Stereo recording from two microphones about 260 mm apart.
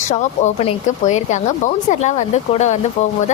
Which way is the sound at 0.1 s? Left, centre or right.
Left.